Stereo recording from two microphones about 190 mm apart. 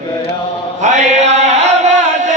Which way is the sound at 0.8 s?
40° right (ahead or behind).